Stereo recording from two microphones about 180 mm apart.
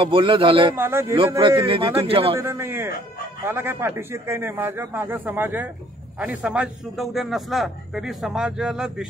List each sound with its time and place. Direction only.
0.0 s a man's voice: 30° right (ahead or behind)
0.7 s a man's voice: 15° right (ahead or behind); by 2.3 s 30° right (ahead or behind)
2.4 s a man's voice: 15° right (ahead or behind)